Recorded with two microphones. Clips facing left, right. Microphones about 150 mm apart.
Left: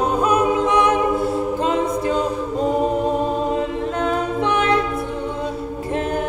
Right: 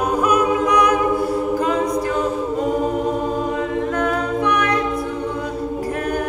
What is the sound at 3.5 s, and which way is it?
A capella, 25° left (ahead or behind).